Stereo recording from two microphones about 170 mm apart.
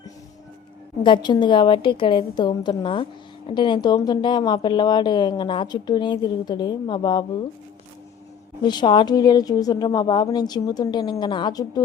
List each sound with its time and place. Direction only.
1.0 s a woman's voice: 25° left (ahead or behind)
8.6 s a woman's voice: 25° left (ahead or behind)